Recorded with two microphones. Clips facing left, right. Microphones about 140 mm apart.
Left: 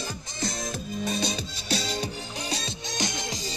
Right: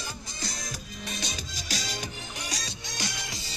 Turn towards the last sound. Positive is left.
turn(degrees=25)  # may be behind; listen again after turning